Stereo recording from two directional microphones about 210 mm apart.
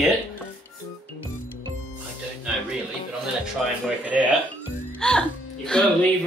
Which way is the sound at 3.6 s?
Centre (ahead or behind).